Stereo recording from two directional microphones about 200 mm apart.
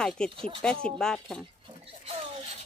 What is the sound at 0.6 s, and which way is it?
Speech, 5° left (ahead or behind).